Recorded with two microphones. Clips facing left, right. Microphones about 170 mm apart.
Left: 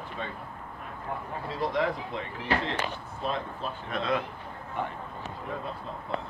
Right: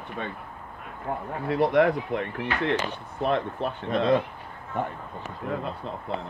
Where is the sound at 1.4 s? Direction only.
65° right (ahead or behind).